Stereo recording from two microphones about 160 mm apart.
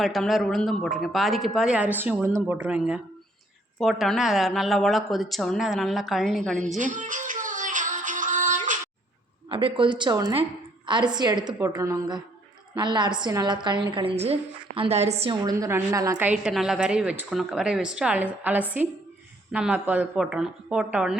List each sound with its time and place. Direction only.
0.0 s a woman's voice: centre (ahead or behind)
6.7 s music: 50° right (ahead or behind)
9.5 s a woman's voice: 35° right (ahead or behind)
15.3 s a woman's voice: 20° right (ahead or behind)
16.1 s a woman's voice: 10° right (ahead or behind)